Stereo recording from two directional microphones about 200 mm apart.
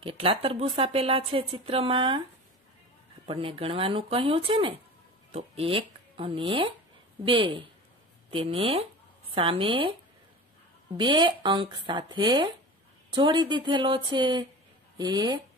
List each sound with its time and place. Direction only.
0.0 s speech: 25° right (ahead or behind)
3.3 s speech: 25° right (ahead or behind)
11.0 s speech: 25° right (ahead or behind)